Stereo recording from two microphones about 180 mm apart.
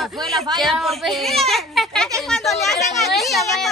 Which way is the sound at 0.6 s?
Centre (ahead or behind).